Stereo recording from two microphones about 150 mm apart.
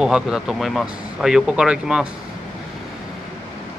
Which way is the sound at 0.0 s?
5° right (ahead or behind).